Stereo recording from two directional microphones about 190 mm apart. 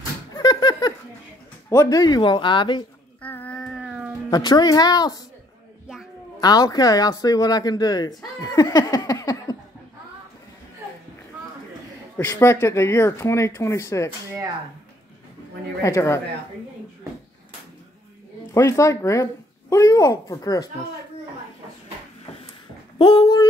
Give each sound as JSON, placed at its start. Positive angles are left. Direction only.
{"t": 0.3, "sound": "a sound", "side_deg": 20}
{"t": 1.7, "sound": "speech", "side_deg": 15}
{"t": 3.2, "sound": "a sound", "side_deg": 10}
{"t": 4.3, "sound": "speech", "side_deg": 20}
{"t": 6.4, "sound": "speech", "side_deg": 20}
{"t": 12.2, "sound": "speech", "side_deg": 15}
{"t": 15.8, "sound": "speech", "side_deg": 15}
{"t": 18.5, "sound": "speech", "side_deg": 15}
{"t": 22.9, "sound": "speech", "side_deg": 25}